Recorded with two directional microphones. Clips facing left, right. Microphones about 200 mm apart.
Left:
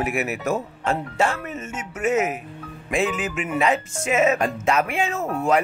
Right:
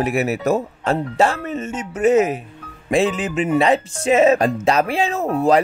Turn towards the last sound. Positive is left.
turn(degrees=-35)  # may be behind; listen again after turning